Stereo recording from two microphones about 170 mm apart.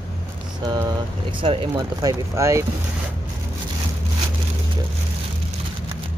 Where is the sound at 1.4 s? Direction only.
30° right (ahead or behind).